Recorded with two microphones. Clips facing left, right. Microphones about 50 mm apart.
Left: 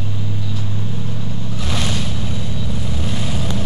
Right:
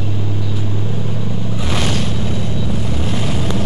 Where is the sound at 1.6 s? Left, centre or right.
Centre.